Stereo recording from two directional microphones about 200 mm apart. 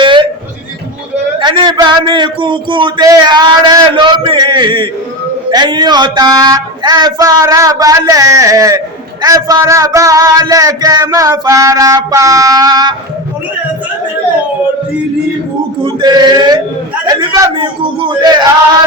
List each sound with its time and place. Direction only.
0.0 s a sound: 25° right (ahead or behind)
1.4 s speech: 25° right (ahead or behind)
15.8 s speech: 20° right (ahead or behind)